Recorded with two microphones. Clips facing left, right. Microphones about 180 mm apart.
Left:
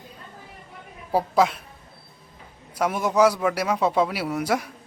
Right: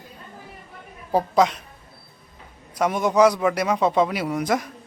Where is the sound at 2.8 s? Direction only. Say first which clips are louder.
Right 2 dB; 5° left (ahead or behind).